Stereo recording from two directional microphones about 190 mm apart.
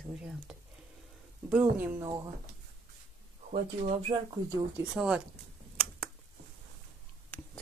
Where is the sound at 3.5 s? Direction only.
30° right (ahead or behind).